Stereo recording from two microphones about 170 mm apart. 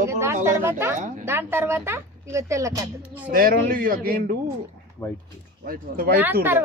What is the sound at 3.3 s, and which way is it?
A man's voice, 55° right (ahead or behind).